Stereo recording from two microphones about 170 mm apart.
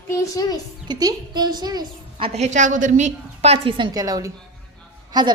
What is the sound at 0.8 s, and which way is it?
A woman's voice, 25° right (ahead or behind).